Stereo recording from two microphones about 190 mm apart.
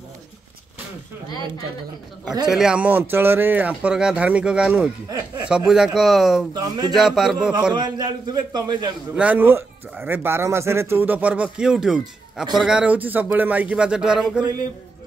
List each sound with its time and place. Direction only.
2.4 s speech: 5° right (ahead or behind)
6.5 s a man's voice: 20° right (ahead or behind)
6.9 s speech: centre (ahead or behind)
7.7 s a man's voice: 20° right (ahead or behind)
9.1 s speech: 5° right (ahead or behind)